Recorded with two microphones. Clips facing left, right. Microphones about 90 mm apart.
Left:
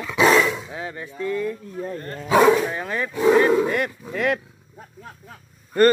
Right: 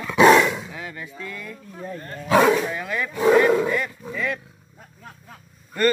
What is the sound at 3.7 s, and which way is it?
Speech, 50° left (ahead or behind).